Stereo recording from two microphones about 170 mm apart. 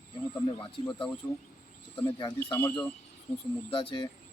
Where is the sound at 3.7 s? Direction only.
30° left (ahead or behind).